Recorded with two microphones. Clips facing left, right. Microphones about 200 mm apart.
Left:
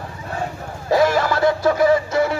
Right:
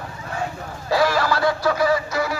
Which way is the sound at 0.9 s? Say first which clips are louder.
Left 3 dB; 20° left (ahead or behind).